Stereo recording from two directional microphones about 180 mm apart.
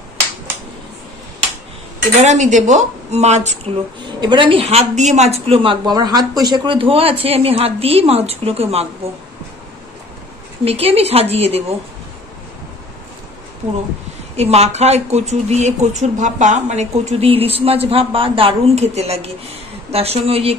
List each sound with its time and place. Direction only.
2.1 s speech: 40° right (ahead or behind)
4.2 s speech: 25° right (ahead or behind)
10.6 s speech: 35° right (ahead or behind)
14.3 s speech: 35° right (ahead or behind)